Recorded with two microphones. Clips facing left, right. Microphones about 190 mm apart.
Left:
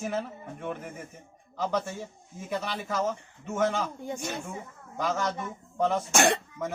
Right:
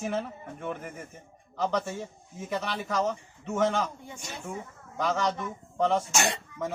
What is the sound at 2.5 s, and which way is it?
A man's voice, 5° left (ahead or behind).